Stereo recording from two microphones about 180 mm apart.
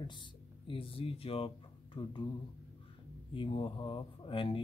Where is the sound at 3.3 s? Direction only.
30° left (ahead or behind).